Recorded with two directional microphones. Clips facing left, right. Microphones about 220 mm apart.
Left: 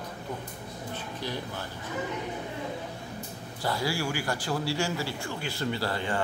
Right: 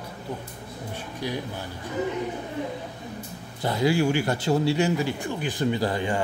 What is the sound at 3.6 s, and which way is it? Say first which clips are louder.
A man's voice: right 8 dB; 20° right (ahead or behind).